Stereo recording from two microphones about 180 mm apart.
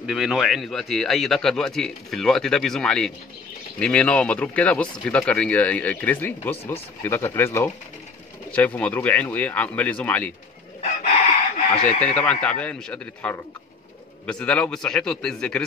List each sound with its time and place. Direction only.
0.0 s a man's voice: 5° right (ahead or behind)
6.5 s speech: 35° left (ahead or behind)
7.0 s speech: 15° left (ahead or behind)
11.5 s chicken: 35° left (ahead or behind)
12.0 s speech: 10° left (ahead or behind)
14.4 s a man's voice: 5° left (ahead or behind)